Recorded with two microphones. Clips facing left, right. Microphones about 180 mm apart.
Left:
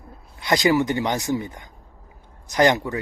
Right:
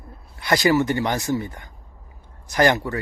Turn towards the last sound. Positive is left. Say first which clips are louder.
# even
turn(degrees=15)  # may be behind; listen again after turning